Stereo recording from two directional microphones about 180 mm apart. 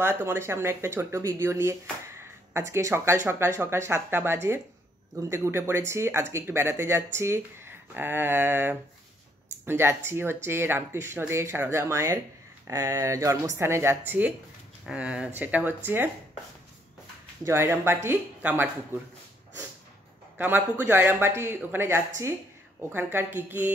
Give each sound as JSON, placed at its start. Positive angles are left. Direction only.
{"t": 0.0, "sound": "speech", "side_deg": -10}
{"t": 17.5, "sound": "speech", "side_deg": -15}
{"t": 20.3, "sound": "a man's voice", "side_deg": -10}